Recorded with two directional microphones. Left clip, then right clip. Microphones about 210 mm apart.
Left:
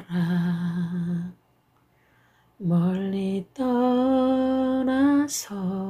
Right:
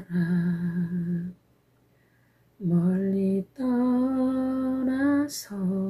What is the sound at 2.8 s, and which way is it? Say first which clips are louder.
Mantra: right 1 dB; 20° left (ahead or behind).